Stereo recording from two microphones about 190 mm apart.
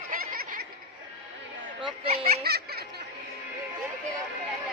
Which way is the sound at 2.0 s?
55° right (ahead or behind).